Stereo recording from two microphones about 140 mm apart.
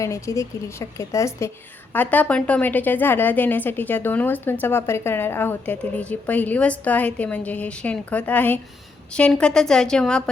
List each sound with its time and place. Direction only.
0.0 s a woman's voice: 20° left (ahead or behind); by 10.2 s 5° left (ahead or behind)